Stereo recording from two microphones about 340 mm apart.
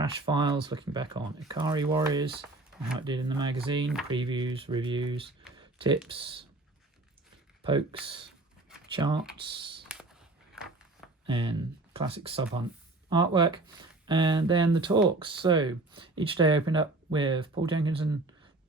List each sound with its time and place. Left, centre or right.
0.0 s speech: centre
7.6 s speech: centre
9.9 s a sound: centre
11.3 s speech: centre